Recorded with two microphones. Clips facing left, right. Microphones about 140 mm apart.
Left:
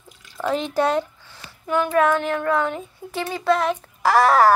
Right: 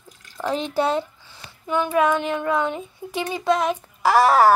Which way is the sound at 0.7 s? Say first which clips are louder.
Left 1 dB; 10° right (ahead or behind).